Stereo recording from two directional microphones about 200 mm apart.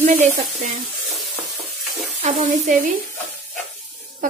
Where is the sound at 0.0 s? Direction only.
40° right (ahead or behind).